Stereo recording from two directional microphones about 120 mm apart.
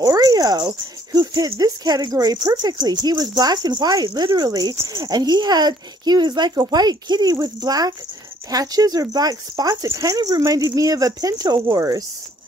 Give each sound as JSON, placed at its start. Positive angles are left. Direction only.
{"t": 0.0, "sound": "speech", "side_deg": -30}